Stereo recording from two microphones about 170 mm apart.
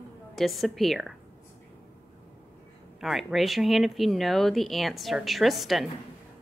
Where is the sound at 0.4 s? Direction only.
Centre (ahead or behind).